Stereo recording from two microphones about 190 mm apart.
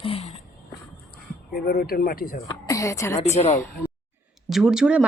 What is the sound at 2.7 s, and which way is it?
A woman's voice, 15° left (ahead or behind).